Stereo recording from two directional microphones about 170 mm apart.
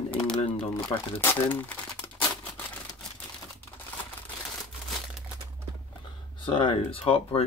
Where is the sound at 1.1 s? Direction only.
10° left (ahead or behind).